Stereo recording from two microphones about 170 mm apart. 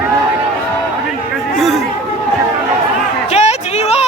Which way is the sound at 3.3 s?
40° left (ahead or behind).